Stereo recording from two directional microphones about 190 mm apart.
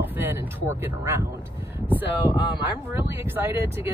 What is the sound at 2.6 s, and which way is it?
Speech, 10° right (ahead or behind).